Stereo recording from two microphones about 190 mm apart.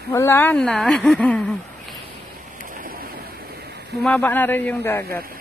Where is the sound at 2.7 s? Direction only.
50° right (ahead or behind).